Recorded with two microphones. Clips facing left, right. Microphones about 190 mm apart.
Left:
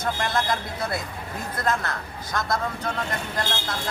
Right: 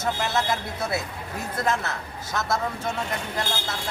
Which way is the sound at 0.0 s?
5° right (ahead or behind).